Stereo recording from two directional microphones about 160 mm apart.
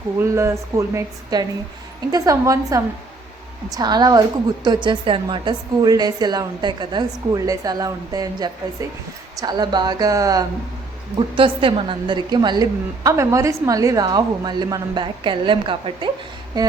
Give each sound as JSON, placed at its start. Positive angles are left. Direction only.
{"t": 0.2, "sound": "a woman's voice", "side_deg": -15}
{"t": 11.3, "sound": "a woman's voice", "side_deg": -35}